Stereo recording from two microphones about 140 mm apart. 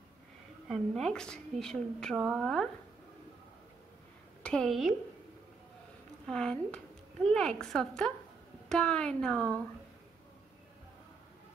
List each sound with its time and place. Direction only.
0.7 s a woman's voice: 5° left (ahead or behind)
4.4 s a woman's voice: 5° left (ahead or behind)
6.2 s a woman's voice: 5° left (ahead or behind)